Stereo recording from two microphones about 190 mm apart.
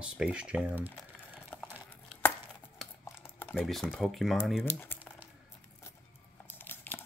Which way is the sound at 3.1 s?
10° left (ahead or behind).